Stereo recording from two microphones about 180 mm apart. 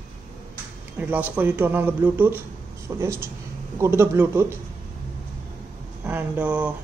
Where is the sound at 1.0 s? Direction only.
10° right (ahead or behind).